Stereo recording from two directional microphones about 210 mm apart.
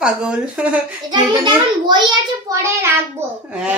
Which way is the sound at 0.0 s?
5° right (ahead or behind).